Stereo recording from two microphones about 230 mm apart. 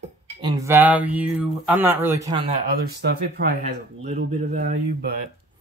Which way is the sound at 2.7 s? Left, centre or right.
Right.